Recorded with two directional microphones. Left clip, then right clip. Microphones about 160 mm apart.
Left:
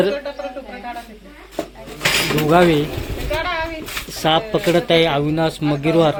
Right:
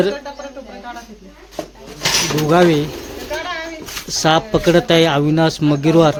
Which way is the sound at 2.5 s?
30° right (ahead or behind).